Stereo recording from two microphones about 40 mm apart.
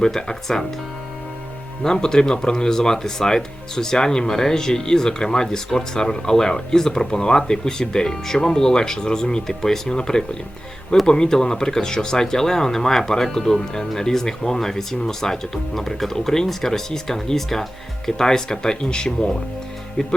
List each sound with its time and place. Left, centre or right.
0.0 s speech: centre
1.8 s speech: centre